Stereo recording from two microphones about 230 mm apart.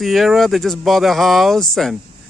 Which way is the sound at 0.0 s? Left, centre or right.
Centre.